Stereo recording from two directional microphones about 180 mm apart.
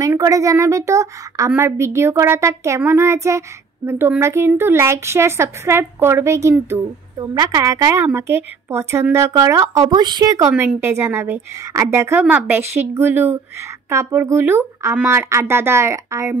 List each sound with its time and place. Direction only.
0.0 s a woman's voice: 20° right (ahead or behind)
10.5 s a woman's voice: 10° right (ahead or behind)